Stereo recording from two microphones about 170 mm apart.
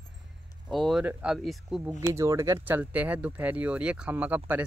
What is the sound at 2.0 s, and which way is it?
Speech, 20° right (ahead or behind).